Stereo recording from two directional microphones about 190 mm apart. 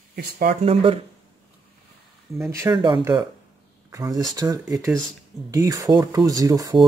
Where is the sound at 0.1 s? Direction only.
50° right (ahead or behind).